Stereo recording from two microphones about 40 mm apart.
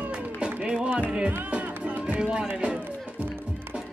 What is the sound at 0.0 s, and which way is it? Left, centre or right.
Music, right.